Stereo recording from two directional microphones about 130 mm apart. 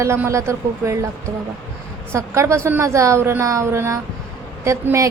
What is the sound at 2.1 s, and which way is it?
A woman's voice, 25° right (ahead or behind).